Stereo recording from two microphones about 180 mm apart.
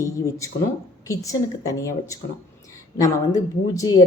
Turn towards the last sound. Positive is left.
turn(degrees=20)  # may be behind; listen again after turning